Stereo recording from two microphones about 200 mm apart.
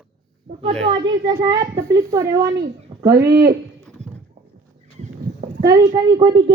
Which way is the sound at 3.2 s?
15° right (ahead or behind).